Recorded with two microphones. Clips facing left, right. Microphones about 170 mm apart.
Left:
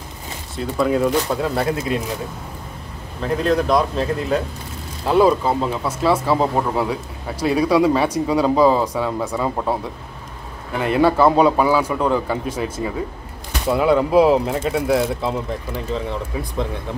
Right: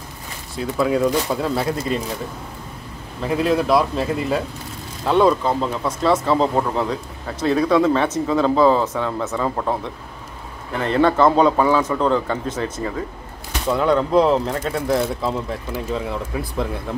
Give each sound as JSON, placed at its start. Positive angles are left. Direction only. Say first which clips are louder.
{"t": 0.6, "sound": "speech", "louder": "even", "side_deg": 0}
{"t": 3.2, "sound": "speech", "louder": "even", "side_deg": -5}
{"t": 10.8, "sound": "speech", "louder": "left 1 dB", "side_deg": 10}